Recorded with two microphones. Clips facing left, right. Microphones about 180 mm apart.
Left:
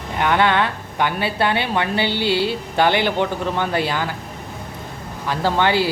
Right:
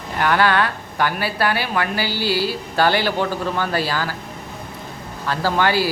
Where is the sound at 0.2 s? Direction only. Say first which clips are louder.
Even; 20° left (ahead or behind).